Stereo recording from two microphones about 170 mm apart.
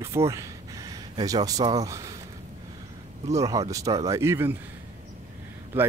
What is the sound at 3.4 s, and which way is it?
Speech, 20° right (ahead or behind).